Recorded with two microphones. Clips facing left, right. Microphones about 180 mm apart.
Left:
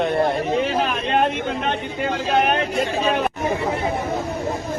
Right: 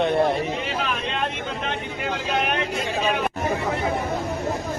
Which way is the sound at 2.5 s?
40° left (ahead or behind).